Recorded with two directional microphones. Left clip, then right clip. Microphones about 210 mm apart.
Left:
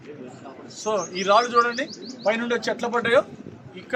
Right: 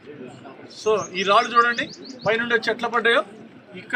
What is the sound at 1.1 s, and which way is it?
Speech, 60° left (ahead or behind).